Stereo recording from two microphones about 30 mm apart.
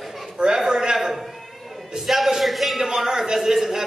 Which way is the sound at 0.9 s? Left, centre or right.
Centre.